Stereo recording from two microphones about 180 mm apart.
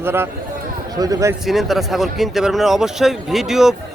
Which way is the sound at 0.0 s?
15° right (ahead or behind).